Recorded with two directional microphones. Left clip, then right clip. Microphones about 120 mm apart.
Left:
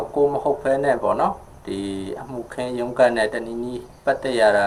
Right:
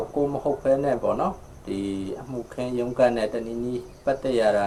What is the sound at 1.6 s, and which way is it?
Speech, 45° right (ahead or behind).